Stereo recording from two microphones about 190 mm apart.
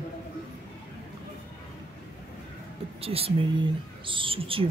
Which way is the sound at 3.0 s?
30° right (ahead or behind).